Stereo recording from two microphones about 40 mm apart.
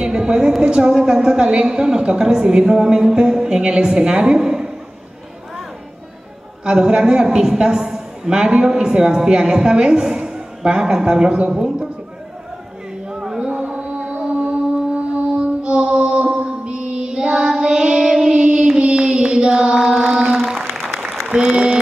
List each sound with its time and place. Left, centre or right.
0.0 s a sound: centre
0.6 s a woman's voice: right
6.6 s a woman's voice: right
13.1 s a sound: centre
13.5 s music: right
16.4 s child singing: right
20.3 s applause: centre; by 21.7 s right